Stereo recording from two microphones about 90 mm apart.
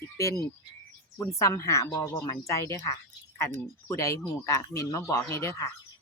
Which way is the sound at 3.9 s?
35° left (ahead or behind).